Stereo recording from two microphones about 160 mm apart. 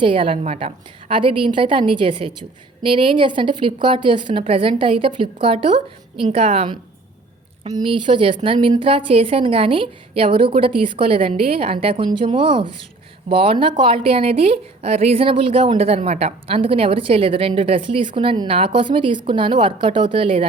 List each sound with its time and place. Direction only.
0.0 s speech: 35° right (ahead or behind)
0.4 s speech: 45° right (ahead or behind)